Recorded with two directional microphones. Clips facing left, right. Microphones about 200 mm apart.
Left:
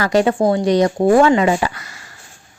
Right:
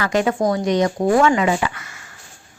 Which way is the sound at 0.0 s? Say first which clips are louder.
Left 4 dB; 35° left (ahead or behind).